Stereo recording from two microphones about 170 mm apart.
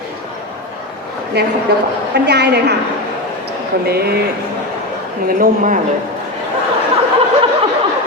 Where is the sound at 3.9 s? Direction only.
65° right (ahead or behind).